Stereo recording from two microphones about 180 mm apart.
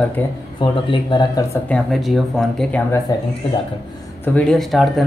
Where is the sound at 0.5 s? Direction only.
25° left (ahead or behind).